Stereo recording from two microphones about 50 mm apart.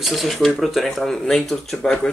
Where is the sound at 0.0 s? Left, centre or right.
Centre.